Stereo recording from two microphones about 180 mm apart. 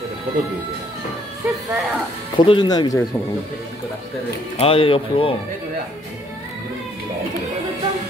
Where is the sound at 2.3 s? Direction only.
25° left (ahead or behind).